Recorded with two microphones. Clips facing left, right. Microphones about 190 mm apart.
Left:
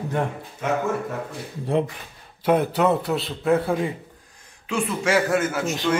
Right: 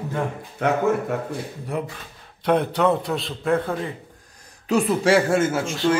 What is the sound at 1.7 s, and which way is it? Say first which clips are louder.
Speech: left 5 dB; 30° left (ahead or behind).